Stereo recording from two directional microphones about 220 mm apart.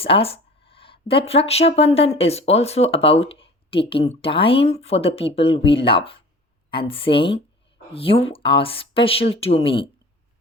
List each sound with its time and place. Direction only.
0.0 s speech: 25° left (ahead or behind)